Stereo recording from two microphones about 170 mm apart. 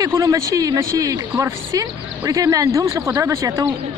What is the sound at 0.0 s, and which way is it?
Speech, 20° right (ahead or behind).